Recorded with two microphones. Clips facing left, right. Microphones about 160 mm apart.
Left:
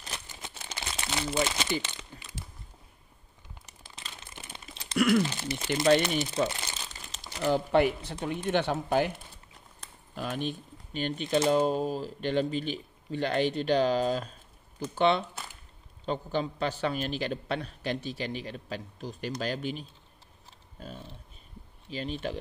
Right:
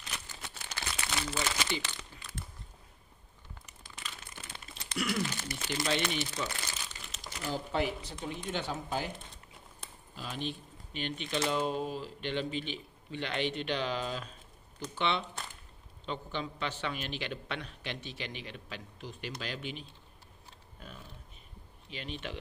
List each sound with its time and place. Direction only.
0.3 s crumpling: 20° left (ahead or behind)
1.7 s speech: 20° left (ahead or behind)
3.6 s crumpling: 30° left (ahead or behind)
4.9 s a sound: 55° left (ahead or behind)
5.3 s speech: 25° left (ahead or behind)
6.1 s crumpling: 30° left (ahead or behind)
7.4 s speech: 65° left (ahead or behind)
10.1 s speech: 55° left (ahead or behind)
21.9 s speech: 40° left (ahead or behind)